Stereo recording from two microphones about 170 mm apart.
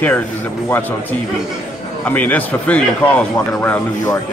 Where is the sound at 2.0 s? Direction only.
10° left (ahead or behind).